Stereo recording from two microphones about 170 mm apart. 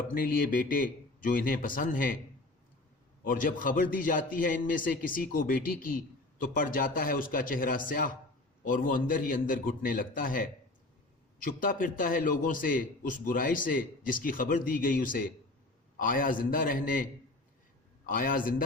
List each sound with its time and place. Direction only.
0.1 s a man's voice: 55° left (ahead or behind)
3.2 s a man's voice: 55° left (ahead or behind)
11.4 s a man's voice: 55° left (ahead or behind)
18.1 s a man's voice: 55° left (ahead or behind)